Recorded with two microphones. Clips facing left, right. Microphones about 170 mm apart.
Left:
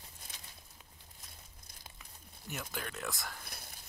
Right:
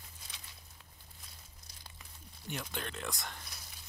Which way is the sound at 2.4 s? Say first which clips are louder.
Right 1 dB; 5° left (ahead or behind).